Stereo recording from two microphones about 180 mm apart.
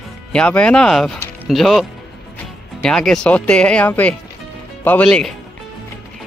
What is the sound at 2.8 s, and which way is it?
Speech, 5° left (ahead or behind).